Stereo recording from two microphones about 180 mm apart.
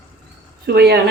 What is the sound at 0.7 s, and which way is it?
Speech, 65° right (ahead or behind).